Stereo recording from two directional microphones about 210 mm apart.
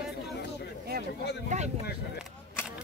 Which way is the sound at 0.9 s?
50° right (ahead or behind).